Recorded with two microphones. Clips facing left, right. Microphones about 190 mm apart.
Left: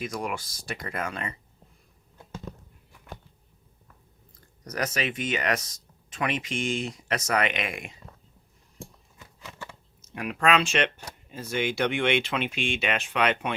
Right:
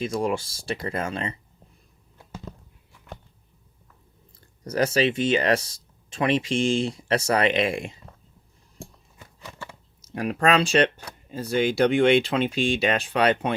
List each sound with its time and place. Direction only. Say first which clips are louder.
0.0 s speech: right 7 dB; 30° right (ahead or behind)
4.4 s speech: right 7 dB; 30° right (ahead or behind)
10.0 s speech: right 4 dB; 35° right (ahead or behind)